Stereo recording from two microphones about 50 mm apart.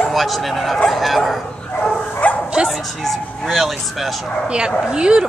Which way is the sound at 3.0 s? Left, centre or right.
Centre.